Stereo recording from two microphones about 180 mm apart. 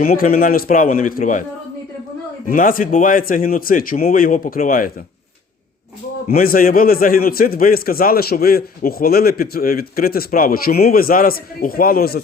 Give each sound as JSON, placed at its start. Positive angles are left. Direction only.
{"t": 0.0, "sound": "speech", "side_deg": 55}
{"t": 2.5, "sound": "speech", "side_deg": 50}
{"t": 6.2, "sound": "a man's voice", "side_deg": 55}